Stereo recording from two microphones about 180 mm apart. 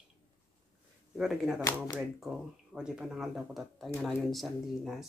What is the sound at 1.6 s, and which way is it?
Speech, 20° left (ahead or behind).